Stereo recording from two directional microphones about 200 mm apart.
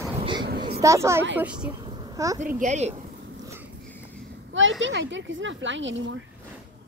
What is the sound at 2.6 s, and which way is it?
Speech, 35° right (ahead or behind).